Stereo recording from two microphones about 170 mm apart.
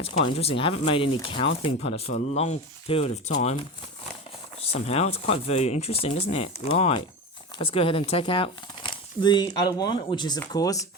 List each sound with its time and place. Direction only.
0.0 s speech: 35° left (ahead or behind)
4.6 s speech: 35° left (ahead or behind); by 10.8 s 20° left (ahead or behind)